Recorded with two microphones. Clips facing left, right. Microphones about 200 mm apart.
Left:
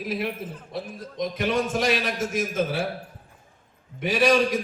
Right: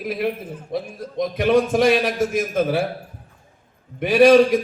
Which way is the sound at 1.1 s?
60° right (ahead or behind).